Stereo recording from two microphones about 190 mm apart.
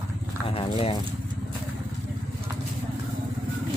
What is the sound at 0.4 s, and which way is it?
Speech, 30° left (ahead or behind).